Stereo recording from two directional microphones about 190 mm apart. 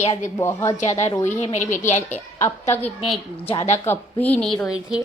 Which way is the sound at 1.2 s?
40° left (ahead or behind).